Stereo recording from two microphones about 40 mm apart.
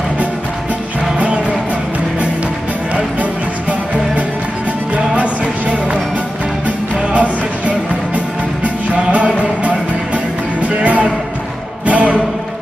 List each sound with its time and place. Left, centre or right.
4.9 s music: right
7.1 s music: right